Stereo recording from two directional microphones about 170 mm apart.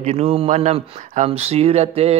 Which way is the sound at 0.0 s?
35° right (ahead or behind).